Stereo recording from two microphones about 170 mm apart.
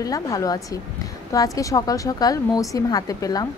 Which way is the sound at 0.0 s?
20° left (ahead or behind).